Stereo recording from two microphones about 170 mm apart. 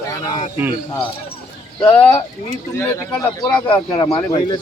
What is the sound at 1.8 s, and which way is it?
Speech, 10° left (ahead or behind).